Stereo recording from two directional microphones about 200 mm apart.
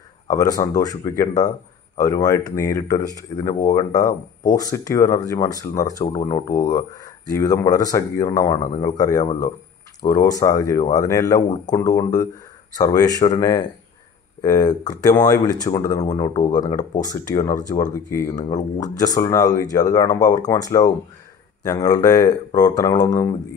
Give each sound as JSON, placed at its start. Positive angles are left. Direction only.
{"t": 0.3, "sound": "speech", "side_deg": 20}
{"t": 8.5, "sound": "speech", "side_deg": 35}
{"t": 8.8, "sound": "speech", "side_deg": 20}